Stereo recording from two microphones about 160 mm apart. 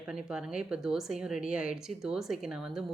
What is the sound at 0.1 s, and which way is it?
A woman's voice, 5° right (ahead or behind).